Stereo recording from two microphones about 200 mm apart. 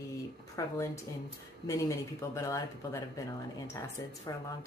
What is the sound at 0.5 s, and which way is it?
Speech, 15° left (ahead or behind).